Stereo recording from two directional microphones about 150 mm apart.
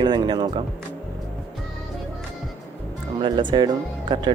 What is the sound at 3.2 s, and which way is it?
Speech, 30° right (ahead or behind).